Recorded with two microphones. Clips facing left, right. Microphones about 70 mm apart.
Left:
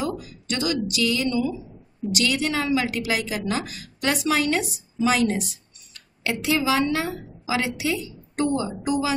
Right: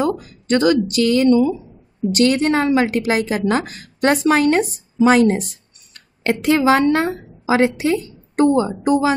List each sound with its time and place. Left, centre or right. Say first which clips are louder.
0.0 s a woman's voice: right 8 dB; right
5.5 s a sound: right 1 dB; right
6.4 s a woman's voice: right 8 dB; right